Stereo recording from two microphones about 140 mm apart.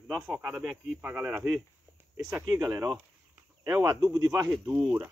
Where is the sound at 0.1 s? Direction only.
5° right (ahead or behind).